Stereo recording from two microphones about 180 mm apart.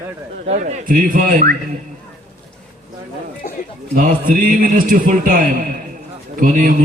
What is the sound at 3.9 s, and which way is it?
A man's voice, 50° right (ahead or behind).